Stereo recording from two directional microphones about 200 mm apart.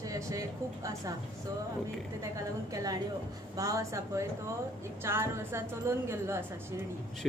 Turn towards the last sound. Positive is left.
turn(degrees=-15)  # may be behind; listen again after turning